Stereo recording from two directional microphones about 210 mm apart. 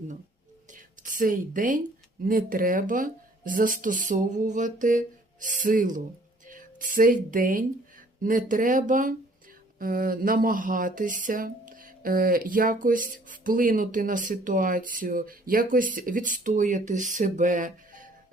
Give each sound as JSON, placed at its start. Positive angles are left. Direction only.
{"t": 0.7, "sound": "speech", "side_deg": -40}